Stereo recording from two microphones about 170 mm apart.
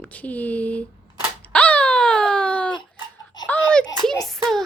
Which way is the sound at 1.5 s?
5° left (ahead or behind).